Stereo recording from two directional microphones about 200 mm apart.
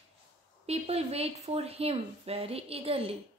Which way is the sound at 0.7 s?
30° right (ahead or behind).